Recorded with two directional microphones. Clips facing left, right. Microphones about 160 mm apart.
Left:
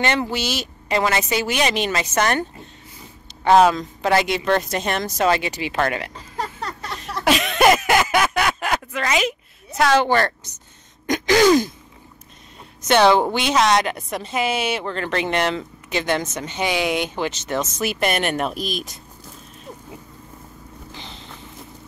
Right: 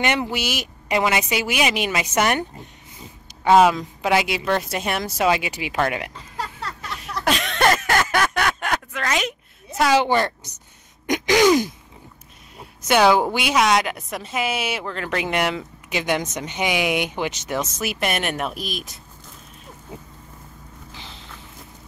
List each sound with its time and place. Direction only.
0.0 s a woman's voice: 15° right (ahead or behind)
3.4 s a woman's voice: 10° right (ahead or behind)
7.0 s a sound: centre (ahead or behind)
9.8 s a woman's voice: 10° right (ahead or behind)
11.1 s throat clearing: 15° right (ahead or behind)
12.8 s a woman's voice: 10° right (ahead or behind)